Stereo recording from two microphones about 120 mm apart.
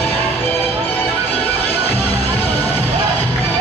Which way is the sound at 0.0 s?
20° left (ahead or behind).